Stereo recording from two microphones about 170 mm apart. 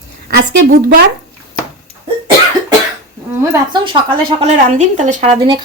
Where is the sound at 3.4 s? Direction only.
25° right (ahead or behind).